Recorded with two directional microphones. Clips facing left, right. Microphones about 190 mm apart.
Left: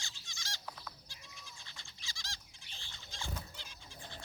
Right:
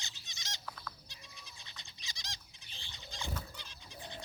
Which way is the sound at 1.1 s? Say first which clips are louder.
Even; 20° right (ahead or behind).